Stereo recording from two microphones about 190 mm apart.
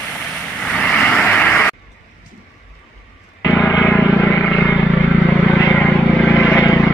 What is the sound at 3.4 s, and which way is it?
Vehicle, 15° left (ahead or behind).